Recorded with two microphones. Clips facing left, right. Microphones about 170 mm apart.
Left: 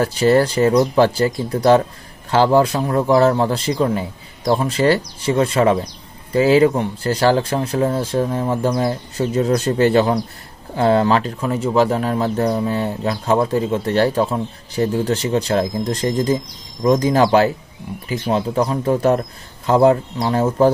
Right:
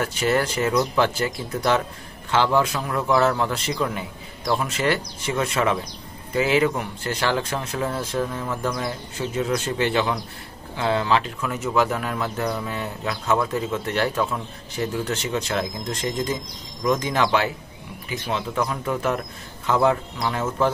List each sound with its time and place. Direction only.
0.0 s speech: 35° left (ahead or behind)